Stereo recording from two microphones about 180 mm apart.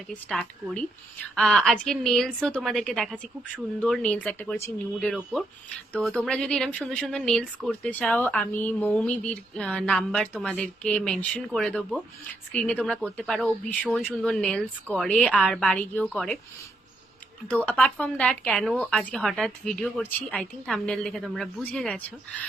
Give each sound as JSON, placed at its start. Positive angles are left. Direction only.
{"t": 0.1, "sound": "speech", "side_deg": 5}
{"t": 17.5, "sound": "speech", "side_deg": 5}